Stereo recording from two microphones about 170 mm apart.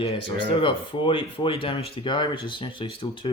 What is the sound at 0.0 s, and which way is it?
Speech, 35° left (ahead or behind).